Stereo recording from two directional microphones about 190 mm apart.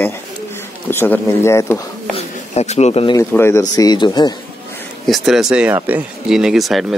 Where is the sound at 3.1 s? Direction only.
15° left (ahead or behind).